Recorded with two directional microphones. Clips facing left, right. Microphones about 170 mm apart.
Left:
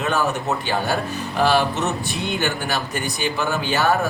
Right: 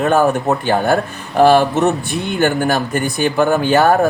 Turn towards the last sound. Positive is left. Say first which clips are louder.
# right 8 dB
turn(degrees=-50)  # may be behind; listen again after turning